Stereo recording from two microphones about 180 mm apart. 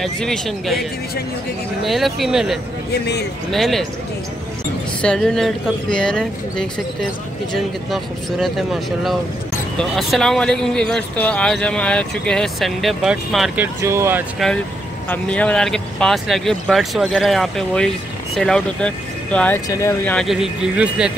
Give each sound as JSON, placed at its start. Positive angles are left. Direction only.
{"t": 0.0, "sound": "speech", "side_deg": 0}
{"t": 1.9, "sound": "speech", "side_deg": 0}
{"t": 2.9, "sound": "speech", "side_deg": 65}
{"t": 3.5, "sound": "speech", "side_deg": 0}
{"t": 5.0, "sound": "speech", "side_deg": 5}
{"t": 13.8, "sound": "speech", "side_deg": -15}
{"t": 15.0, "sound": "speech", "side_deg": 5}
{"t": 20.2, "sound": "speech", "side_deg": 0}